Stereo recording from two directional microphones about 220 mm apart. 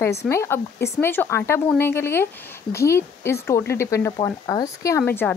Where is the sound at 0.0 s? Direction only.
10° left (ahead or behind).